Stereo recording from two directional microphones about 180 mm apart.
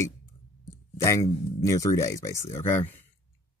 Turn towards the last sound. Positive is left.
turn(degrees=10)  # may be behind; listen again after turning